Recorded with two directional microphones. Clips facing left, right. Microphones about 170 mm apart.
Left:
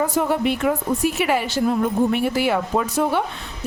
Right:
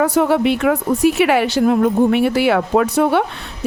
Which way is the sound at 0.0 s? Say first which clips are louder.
Right 5 dB; 75° right (ahead or behind).